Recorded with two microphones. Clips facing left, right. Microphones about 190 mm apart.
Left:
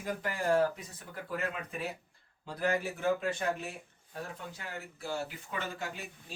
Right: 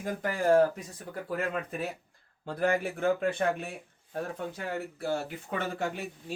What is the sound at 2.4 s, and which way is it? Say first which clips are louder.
Speech: right 4 dB; 55° right (ahead or behind).